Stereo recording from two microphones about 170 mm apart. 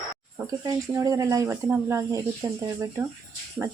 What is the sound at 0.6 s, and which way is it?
Speech, 20° right (ahead or behind).